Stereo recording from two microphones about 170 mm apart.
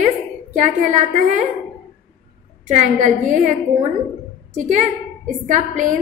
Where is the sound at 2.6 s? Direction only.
45° right (ahead or behind).